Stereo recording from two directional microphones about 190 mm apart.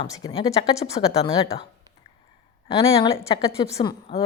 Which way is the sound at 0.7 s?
35° left (ahead or behind).